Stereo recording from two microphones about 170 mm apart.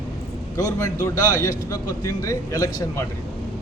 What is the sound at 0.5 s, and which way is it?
A man's voice, 15° left (ahead or behind).